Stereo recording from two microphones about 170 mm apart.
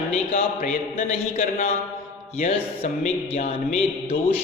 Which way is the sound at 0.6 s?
55° left (ahead or behind).